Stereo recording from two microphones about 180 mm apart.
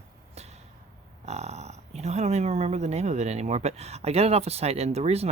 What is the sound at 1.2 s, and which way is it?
Speech, 35° right (ahead or behind).